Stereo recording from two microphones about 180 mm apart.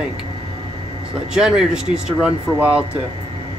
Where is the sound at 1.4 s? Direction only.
5° right (ahead or behind).